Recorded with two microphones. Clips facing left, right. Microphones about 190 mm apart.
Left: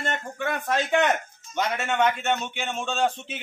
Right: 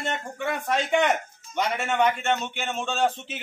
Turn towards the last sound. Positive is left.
turn(degrees=0)  # may be behind; listen again after turning